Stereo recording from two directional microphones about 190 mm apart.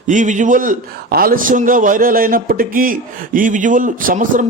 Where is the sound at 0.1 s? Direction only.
40° right (ahead or behind).